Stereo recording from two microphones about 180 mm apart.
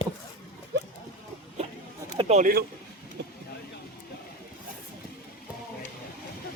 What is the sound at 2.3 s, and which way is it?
Speech, 50° right (ahead or behind).